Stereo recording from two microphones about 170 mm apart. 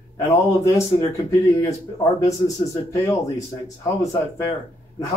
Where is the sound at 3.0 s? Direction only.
20° left (ahead or behind).